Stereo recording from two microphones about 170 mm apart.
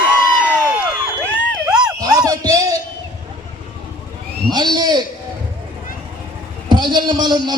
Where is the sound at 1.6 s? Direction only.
5° right (ahead or behind).